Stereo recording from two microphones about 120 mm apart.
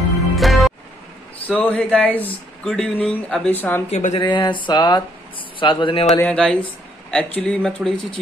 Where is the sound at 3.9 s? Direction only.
90° left.